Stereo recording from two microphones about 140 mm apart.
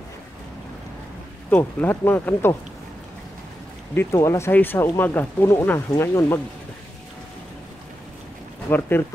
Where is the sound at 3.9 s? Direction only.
20° left (ahead or behind).